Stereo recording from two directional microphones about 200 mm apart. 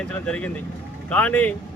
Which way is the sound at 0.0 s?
5° left (ahead or behind).